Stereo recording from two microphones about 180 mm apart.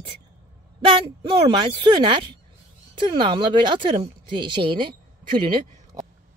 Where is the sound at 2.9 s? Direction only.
25° right (ahead or behind).